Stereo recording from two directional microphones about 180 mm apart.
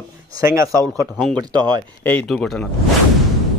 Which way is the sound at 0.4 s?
15° right (ahead or behind).